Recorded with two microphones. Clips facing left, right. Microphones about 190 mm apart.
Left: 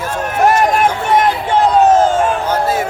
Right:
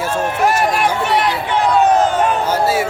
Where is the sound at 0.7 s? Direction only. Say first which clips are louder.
Left 3 dB; 45° left (ahead or behind).